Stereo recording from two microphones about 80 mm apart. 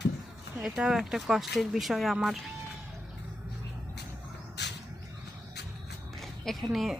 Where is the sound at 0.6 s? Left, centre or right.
Centre.